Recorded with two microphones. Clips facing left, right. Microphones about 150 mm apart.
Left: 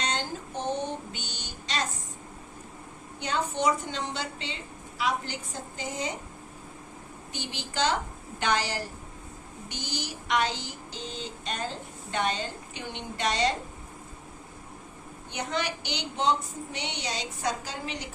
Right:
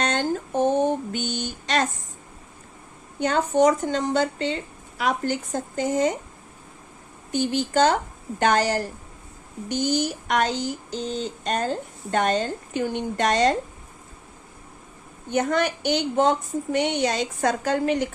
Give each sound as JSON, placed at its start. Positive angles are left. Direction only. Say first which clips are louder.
{"t": 0.0, "sound": "a sound", "louder": "right 8 dB", "side_deg": -55}
{"t": 3.2, "sound": "speech", "louder": "right 10 dB", "side_deg": -50}
{"t": 7.3, "sound": "speech", "louder": "right 15 dB", "side_deg": -50}
{"t": 15.3, "sound": "speech", "louder": "right 9 dB", "side_deg": -50}